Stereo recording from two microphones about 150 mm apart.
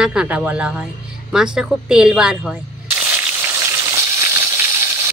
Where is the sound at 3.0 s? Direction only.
15° right (ahead or behind).